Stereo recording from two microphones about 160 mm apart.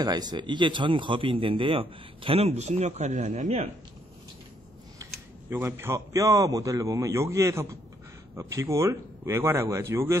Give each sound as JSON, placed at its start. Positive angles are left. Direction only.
{"t": 0.0, "sound": "a man's voice", "side_deg": -25}
{"t": 5.5, "sound": "a man's voice", "side_deg": -15}